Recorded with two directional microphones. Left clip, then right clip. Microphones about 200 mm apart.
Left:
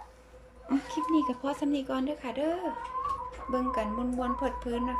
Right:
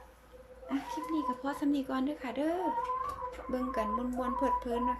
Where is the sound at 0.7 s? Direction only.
15° left (ahead or behind).